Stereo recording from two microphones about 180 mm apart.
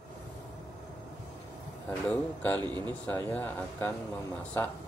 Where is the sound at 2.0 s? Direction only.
10° left (ahead or behind).